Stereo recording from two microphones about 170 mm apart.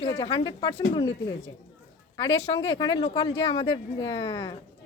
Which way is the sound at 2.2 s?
30° left (ahead or behind).